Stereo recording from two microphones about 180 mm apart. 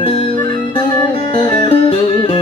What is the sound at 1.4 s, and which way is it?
Music, 25° left (ahead or behind).